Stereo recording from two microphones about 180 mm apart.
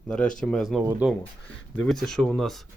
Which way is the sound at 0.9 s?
5° right (ahead or behind).